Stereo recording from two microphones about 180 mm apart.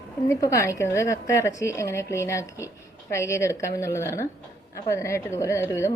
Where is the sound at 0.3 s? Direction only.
20° left (ahead or behind).